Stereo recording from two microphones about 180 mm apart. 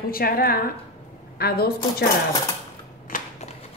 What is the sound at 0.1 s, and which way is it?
A woman's voice, 55° left (ahead or behind).